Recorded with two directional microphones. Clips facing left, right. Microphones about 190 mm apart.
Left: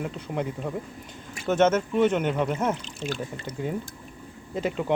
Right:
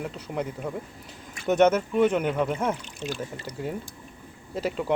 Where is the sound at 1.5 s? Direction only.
15° right (ahead or behind).